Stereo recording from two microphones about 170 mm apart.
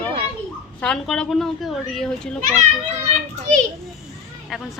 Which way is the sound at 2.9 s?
40° right (ahead or behind).